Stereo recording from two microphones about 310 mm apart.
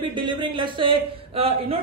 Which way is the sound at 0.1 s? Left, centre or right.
Centre.